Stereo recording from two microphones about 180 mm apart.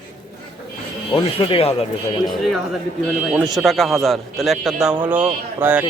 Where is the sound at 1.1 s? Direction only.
30° left (ahead or behind).